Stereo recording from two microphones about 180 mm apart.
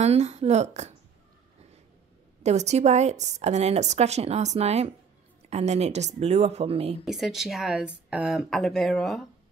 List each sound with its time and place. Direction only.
0.0 s a woman's voice: 35° right (ahead or behind)
2.4 s a woman's voice: 40° right (ahead or behind)
7.1 s speech: centre (ahead or behind)